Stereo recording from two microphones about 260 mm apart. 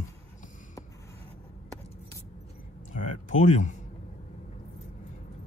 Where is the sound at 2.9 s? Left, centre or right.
Left.